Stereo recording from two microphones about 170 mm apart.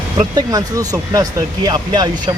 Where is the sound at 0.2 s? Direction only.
20° right (ahead or behind).